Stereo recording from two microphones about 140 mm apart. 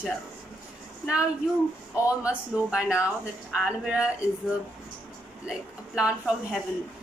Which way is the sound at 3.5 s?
10° right (ahead or behind).